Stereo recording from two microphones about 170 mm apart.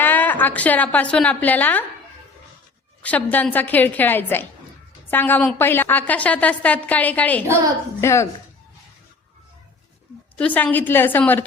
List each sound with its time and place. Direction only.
0.0 s a woman's voice: 10° left (ahead or behind)
3.0 s a woman's voice: 10° left (ahead or behind)
10.3 s a woman's voice: 10° left (ahead or behind)